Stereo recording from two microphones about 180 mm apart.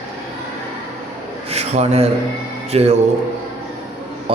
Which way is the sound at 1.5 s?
35° right (ahead or behind).